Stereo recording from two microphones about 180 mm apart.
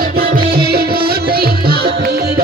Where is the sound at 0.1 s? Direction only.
60° right (ahead or behind).